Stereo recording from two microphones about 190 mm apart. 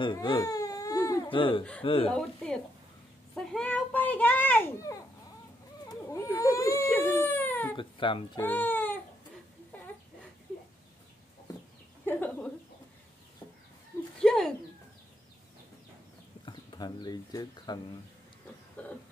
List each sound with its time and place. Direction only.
0.0 s baby cry: 25° left (ahead or behind)
1.8 s speech: 30° left (ahead or behind)
2.1 s speech: 5° left (ahead or behind)
3.3 s children playing: 5° left (ahead or behind)
5.9 s baby cry: 15° left (ahead or behind)
7.7 s speech: 25° left (ahead or behind)
8.4 s speech: 10° left (ahead or behind)
12.1 s a sound: 10° left (ahead or behind)
14.2 s bird: centre (ahead or behind)
16.4 s speech: 25° left (ahead or behind)
18.8 s a sound: 10° left (ahead or behind)